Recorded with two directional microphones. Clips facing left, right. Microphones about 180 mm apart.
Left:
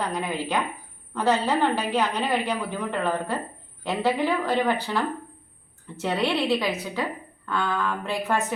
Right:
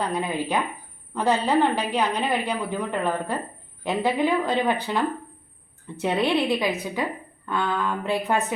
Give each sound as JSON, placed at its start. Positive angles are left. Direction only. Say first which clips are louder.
{"t": 0.2, "sound": "a woman's voice", "louder": "right 1 dB", "side_deg": -15}